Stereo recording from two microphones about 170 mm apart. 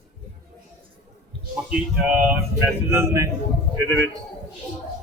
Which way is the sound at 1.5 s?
10° right (ahead or behind).